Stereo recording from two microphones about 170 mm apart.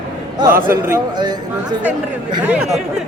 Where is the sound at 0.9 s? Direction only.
25° right (ahead or behind).